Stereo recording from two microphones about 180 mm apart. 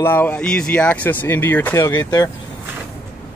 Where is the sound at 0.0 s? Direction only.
10° left (ahead or behind).